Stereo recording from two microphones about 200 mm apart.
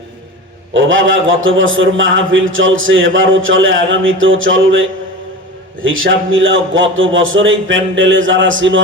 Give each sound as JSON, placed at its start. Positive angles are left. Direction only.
{"t": 0.7, "sound": "a man's voice", "side_deg": -75}